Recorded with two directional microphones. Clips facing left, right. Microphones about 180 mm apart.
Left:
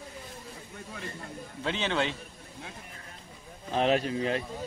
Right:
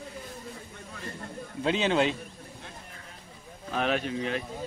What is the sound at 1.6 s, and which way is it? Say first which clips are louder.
Speech: right 5 dB; 15° right (ahead or behind).